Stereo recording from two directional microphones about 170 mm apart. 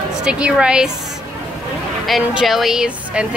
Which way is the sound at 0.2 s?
5° right (ahead or behind).